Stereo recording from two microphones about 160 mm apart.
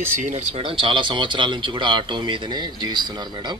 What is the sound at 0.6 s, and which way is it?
Speech, 30° right (ahead or behind).